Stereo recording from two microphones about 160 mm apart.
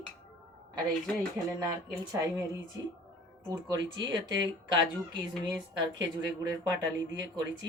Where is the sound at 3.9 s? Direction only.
25° right (ahead or behind).